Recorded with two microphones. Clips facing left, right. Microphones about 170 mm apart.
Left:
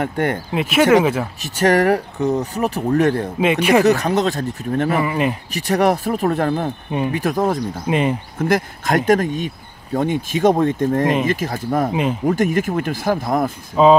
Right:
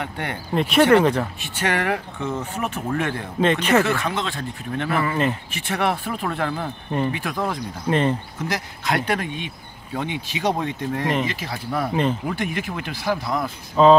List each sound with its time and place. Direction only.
0.0 s speech: 45° left (ahead or behind)
0.5 s speech: 5° left (ahead or behind)
1.4 s speech: 40° left (ahead or behind)
3.3 s speech: 10° left (ahead or behind)
3.8 s speech: 40° left (ahead or behind)
4.9 s speech: 15° left (ahead or behind)
5.5 s speech: 40° left (ahead or behind)
7.9 s speech: 10° left (ahead or behind)
8.4 s speech: 50° left (ahead or behind)
11.9 s speech: 10° left (ahead or behind)
12.3 s speech: 45° left (ahead or behind)
13.8 s speech: 10° left (ahead or behind)